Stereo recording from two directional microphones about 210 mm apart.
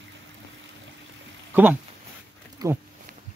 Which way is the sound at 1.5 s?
10° right (ahead or behind).